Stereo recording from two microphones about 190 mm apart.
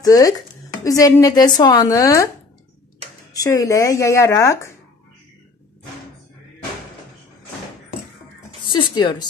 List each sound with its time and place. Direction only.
0.0 s a woman's voice: 20° left (ahead or behind)
3.3 s speech: 20° left (ahead or behind)
8.6 s a sound: 25° left (ahead or behind)